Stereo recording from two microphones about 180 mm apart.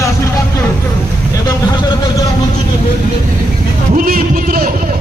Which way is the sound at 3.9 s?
55° right (ahead or behind).